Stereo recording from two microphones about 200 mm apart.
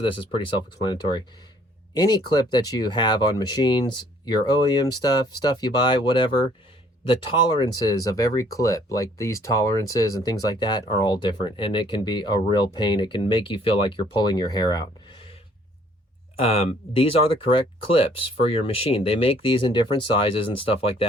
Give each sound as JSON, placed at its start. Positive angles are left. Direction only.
{"t": 0.0, "sound": "speech", "side_deg": 25}
{"t": 16.4, "sound": "speech", "side_deg": 30}